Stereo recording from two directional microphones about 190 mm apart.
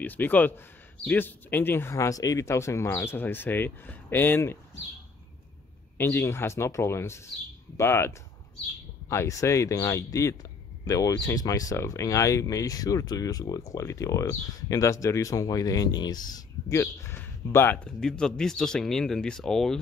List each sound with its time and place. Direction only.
0.0 s speech: 10° left (ahead or behind)
5.9 s speech: 10° left (ahead or behind)